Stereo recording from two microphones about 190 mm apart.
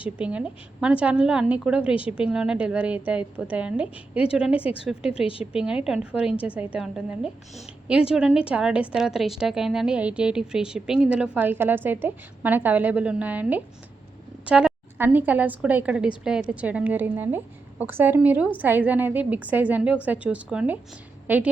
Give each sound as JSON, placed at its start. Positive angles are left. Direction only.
{"t": 0.0, "sound": "a woman's voice", "side_deg": -5}
{"t": 5.2, "sound": "a woman's voice", "side_deg": 30}
{"t": 5.5, "sound": "a woman's voice", "side_deg": -5}